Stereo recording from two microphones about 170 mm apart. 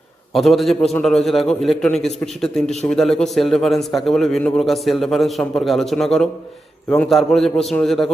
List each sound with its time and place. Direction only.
0.3 s a man's voice: centre (ahead or behind)